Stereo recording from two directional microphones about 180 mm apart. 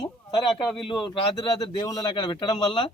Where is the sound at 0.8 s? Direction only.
25° left (ahead or behind).